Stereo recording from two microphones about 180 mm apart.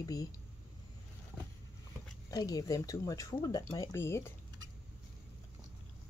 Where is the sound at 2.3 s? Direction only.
20° left (ahead or behind).